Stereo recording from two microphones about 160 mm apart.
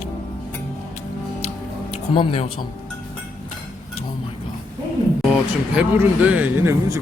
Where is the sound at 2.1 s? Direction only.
35° left (ahead or behind).